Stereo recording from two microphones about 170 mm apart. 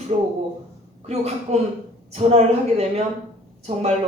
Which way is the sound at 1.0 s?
40° right (ahead or behind).